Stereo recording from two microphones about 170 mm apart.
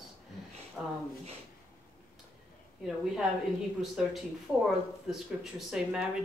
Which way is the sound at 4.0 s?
5° right (ahead or behind).